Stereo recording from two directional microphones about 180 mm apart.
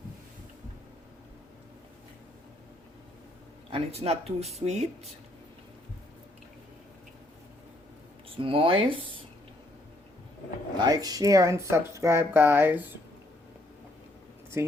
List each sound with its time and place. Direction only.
3.7 s speech: 35° right (ahead or behind)
8.4 s speech: 30° right (ahead or behind)
10.8 s speech: 20° right (ahead or behind)
14.5 s speech: 15° right (ahead or behind)